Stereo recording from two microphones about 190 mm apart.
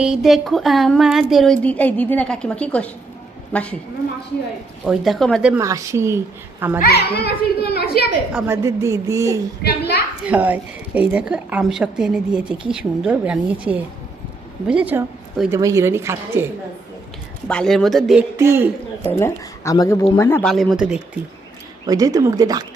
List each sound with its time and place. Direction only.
0.0 s a woman's voice: centre (ahead or behind)
4.9 s a woman's voice: centre (ahead or behind)
5.5 s a woman's voice: 15° right (ahead or behind)
6.7 s a child's voice: 55° left (ahead or behind)
8.3 s a woman's voice: 5° right (ahead or behind)
8.6 s a woman's voice: 15° right (ahead or behind)
9.6 s a child's voice: 55° left (ahead or behind)
10.2 s a woman's voice: 10° right (ahead or behind)
17.5 s a woman's voice: 5° left (ahead or behind)
18.3 s a woman's voice: 15° right (ahead or behind)
19.0 s speech: 15° left (ahead or behind)
20.4 s a woman's voice: centre (ahead or behind)
21.8 s speech: 20° right (ahead or behind)